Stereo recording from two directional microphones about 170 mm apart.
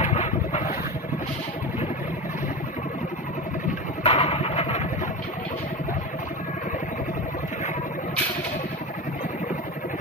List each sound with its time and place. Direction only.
0.0 s boat: 40° left (ahead or behind)
4.0 s vehicle: 40° left (ahead or behind)